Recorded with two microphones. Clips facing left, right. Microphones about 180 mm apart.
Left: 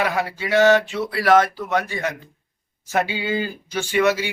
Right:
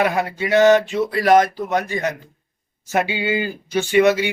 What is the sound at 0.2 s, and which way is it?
Mantra, 50° right (ahead or behind).